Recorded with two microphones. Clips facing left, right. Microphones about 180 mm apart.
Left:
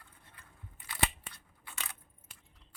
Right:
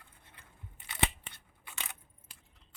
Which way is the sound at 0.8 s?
20° right (ahead or behind).